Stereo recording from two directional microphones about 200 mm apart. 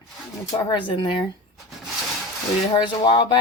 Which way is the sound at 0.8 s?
25° left (ahead or behind).